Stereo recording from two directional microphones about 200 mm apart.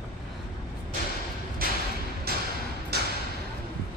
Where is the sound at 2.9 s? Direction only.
55° right (ahead or behind).